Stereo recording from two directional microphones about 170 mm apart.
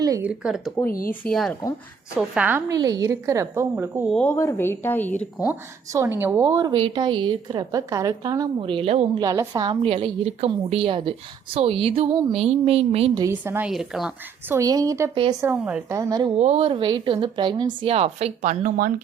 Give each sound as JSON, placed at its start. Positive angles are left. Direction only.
{"t": 0.0, "sound": "speech", "side_deg": -20}
{"t": 0.3, "sound": "speech", "side_deg": -5}
{"t": 2.7, "sound": "speech", "side_deg": -25}
{"t": 4.1, "sound": "speech", "side_deg": 10}
{"t": 5.5, "sound": "a woman's voice", "side_deg": -15}
{"t": 9.1, "sound": "a woman's voice", "side_deg": -20}
{"t": 13.3, "sound": "speech", "side_deg": -10}
{"t": 14.5, "sound": "a woman's voice", "side_deg": -20}
{"t": 15.1, "sound": "speech", "side_deg": -30}
{"t": 15.4, "sound": "speech", "side_deg": -10}
{"t": 16.4, "sound": "speech", "side_deg": -35}